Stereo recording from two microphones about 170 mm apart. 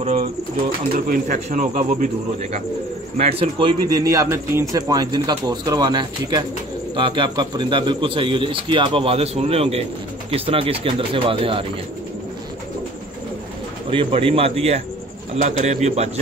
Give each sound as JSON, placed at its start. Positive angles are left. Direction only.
{"t": 0.0, "sound": "speech", "side_deg": -40}
{"t": 0.9, "sound": "speech", "side_deg": -55}
{"t": 3.3, "sound": "a man's voice", "side_deg": -30}
{"t": 13.8, "sound": "speech", "side_deg": -35}